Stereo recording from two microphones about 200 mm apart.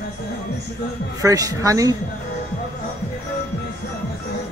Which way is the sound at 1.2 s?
15° right (ahead or behind).